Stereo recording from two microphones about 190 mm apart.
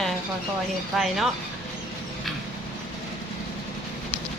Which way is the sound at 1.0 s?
Centre (ahead or behind).